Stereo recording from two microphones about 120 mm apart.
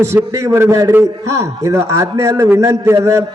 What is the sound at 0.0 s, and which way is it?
A man's voice, 25° right (ahead or behind).